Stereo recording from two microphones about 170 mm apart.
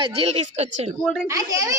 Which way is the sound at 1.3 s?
20° right (ahead or behind).